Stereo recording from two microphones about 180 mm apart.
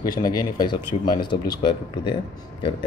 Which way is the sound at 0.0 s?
20° left (ahead or behind).